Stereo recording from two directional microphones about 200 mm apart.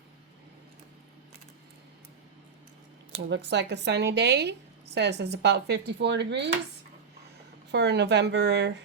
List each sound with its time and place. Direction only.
3.2 s speech: 60° right (ahead or behind)
7.7 s speech: 60° right (ahead or behind)